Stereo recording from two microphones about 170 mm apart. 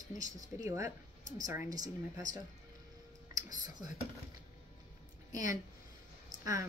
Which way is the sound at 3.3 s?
25° right (ahead or behind).